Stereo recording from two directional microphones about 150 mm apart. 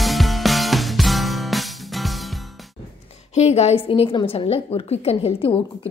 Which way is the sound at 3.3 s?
45° left (ahead or behind).